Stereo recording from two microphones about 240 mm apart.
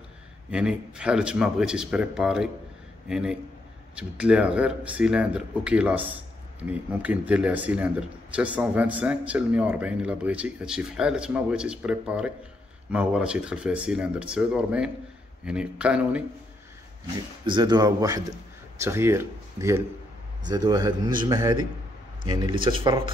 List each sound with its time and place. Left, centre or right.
0.5 s a man's voice: centre
17.5 s a man's voice: centre